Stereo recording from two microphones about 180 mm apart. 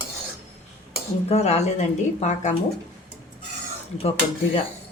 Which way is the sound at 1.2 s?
35° left (ahead or behind).